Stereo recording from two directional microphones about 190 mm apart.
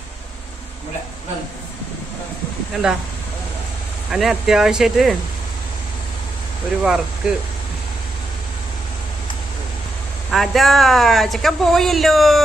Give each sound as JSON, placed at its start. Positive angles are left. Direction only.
{"t": 2.7, "sound": "speech", "side_deg": -5}
{"t": 4.1, "sound": "speech", "side_deg": 0}
{"t": 6.8, "sound": "speech", "side_deg": -5}
{"t": 10.3, "sound": "speech", "side_deg": 0}